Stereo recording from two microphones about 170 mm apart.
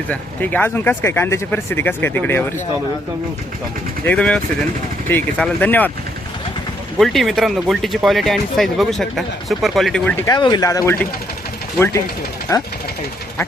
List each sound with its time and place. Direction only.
0.1 s speech: 10° left (ahead or behind)
4.0 s speech: 5° left (ahead or behind)
7.0 s speech: centre (ahead or behind)
10.2 s speech: 25° left (ahead or behind)
12.5 s speech: 20° left (ahead or behind)